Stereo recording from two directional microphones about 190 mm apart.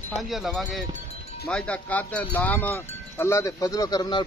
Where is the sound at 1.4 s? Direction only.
5° left (ahead or behind); by 4.2 s 20° left (ahead or behind).